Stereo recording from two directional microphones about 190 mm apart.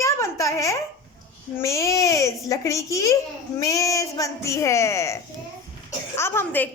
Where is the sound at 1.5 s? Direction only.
15° left (ahead or behind).